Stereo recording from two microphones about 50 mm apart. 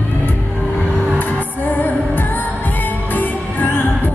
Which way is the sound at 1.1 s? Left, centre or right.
Left.